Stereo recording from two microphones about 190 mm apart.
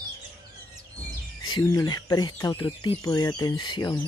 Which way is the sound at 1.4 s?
20° left (ahead or behind).